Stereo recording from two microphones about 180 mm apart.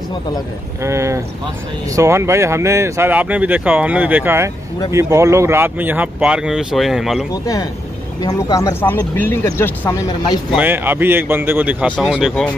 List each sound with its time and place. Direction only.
0.8 s speech: 15° right (ahead or behind)
8.2 s speech: 20° left (ahead or behind)
10.5 s speech: 10° right (ahead or behind)